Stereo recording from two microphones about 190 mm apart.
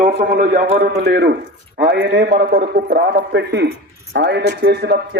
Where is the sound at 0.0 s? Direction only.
45° right (ahead or behind).